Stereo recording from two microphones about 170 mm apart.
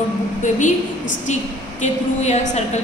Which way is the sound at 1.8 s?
40° left (ahead or behind).